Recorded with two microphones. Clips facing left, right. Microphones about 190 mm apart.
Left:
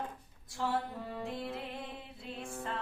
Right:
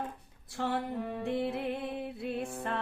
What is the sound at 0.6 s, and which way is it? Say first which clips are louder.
Music: right 2 dB; 65° right (ahead or behind).